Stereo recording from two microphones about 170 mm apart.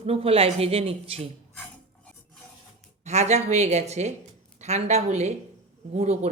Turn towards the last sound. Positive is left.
turn(degrees=-40)  # may be behind; listen again after turning